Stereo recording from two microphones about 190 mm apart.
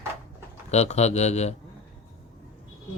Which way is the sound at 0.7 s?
35° left (ahead or behind).